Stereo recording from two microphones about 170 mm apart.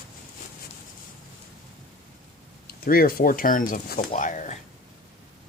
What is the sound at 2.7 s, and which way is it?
Speech, 60° left (ahead or behind).